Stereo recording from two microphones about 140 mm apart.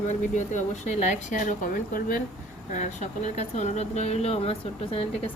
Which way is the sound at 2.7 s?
55° left (ahead or behind).